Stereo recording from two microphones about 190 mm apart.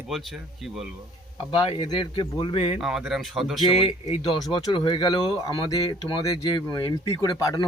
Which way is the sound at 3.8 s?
25° left (ahead or behind).